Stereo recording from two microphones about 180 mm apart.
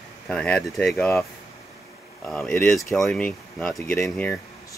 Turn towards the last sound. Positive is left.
turn(degrees=5)  # may be behind; listen again after turning